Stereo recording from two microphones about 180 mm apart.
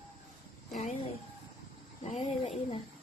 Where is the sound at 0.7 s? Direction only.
40° left (ahead or behind).